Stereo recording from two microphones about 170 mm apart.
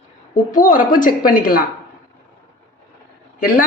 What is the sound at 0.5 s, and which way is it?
A woman's voice, 50° left (ahead or behind).